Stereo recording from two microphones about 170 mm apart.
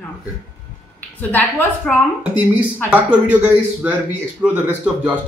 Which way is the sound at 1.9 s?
5° left (ahead or behind).